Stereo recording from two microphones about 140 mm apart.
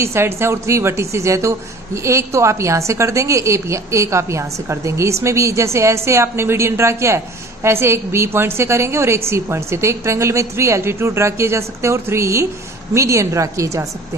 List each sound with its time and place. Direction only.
0.0 s a woman's voice: 15° right (ahead or behind)